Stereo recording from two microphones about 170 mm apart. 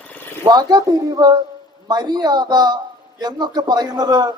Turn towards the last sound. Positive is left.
turn(degrees=-25)  # may be behind; listen again after turning